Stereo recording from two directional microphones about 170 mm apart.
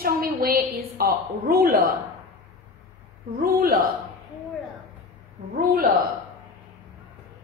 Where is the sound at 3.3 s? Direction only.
60° right (ahead or behind).